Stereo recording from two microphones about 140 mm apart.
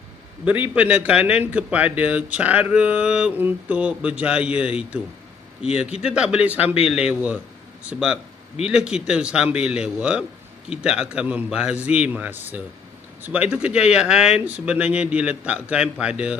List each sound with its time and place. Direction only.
0.5 s a man's voice: 10° right (ahead or behind)
5.9 s speech: 45° left (ahead or behind)
6.1 s a man's voice: 10° right (ahead or behind)
6.6 s speech: 45° left (ahead or behind)
7.1 s a man's voice: 10° right (ahead or behind)